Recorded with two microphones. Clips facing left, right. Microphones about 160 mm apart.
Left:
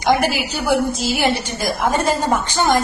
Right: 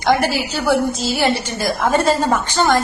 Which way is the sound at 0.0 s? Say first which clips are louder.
Even; 15° left (ahead or behind).